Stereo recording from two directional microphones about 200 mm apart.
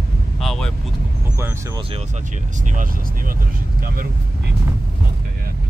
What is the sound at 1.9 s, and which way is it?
Speech, 35° right (ahead or behind).